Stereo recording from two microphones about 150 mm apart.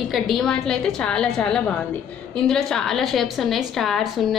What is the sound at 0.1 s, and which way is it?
A woman's voice, centre (ahead or behind).